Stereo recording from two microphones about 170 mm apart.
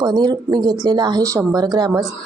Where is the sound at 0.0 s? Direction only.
25° right (ahead or behind).